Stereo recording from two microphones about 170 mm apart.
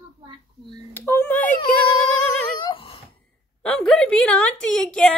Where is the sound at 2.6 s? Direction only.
30° left (ahead or behind).